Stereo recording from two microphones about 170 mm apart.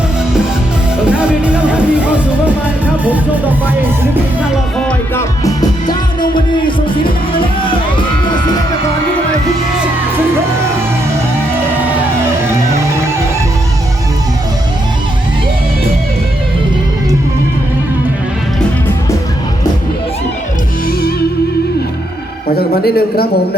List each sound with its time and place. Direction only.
1.2 s music: 5° right (ahead or behind)
3.0 s music: 10° right (ahead or behind)
4.9 s music: 15° left (ahead or behind)
22.4 s a sound: 65° left (ahead or behind)